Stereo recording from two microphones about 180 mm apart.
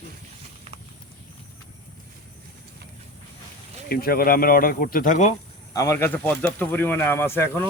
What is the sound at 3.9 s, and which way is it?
Speech, 55° left (ahead or behind).